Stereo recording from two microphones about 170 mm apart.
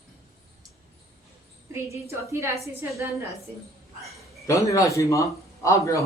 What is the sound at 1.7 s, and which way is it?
Speech, 15° right (ahead or behind).